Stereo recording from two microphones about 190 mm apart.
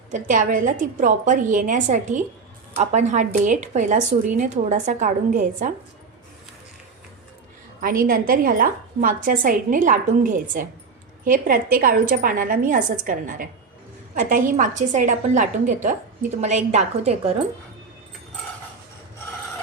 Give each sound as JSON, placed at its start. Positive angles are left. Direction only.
{"t": 0.1, "sound": "a woman's voice", "side_deg": -40}
{"t": 7.8, "sound": "a woman's voice", "side_deg": -50}